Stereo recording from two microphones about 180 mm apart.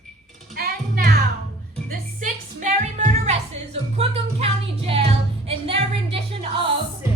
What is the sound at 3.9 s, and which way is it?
Music, 35° right (ahead or behind).